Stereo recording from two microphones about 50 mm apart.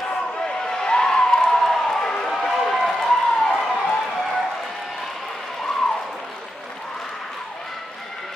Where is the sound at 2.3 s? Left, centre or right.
Centre.